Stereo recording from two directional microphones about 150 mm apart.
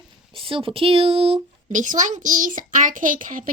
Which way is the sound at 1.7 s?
55° right (ahead or behind).